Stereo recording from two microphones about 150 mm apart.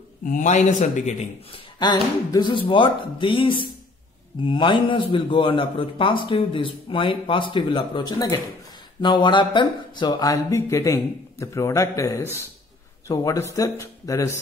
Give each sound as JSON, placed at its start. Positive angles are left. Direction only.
{"t": 0.2, "sound": "a man's voice", "side_deg": 60}
{"t": 1.8, "sound": "a man's voice", "side_deg": 30}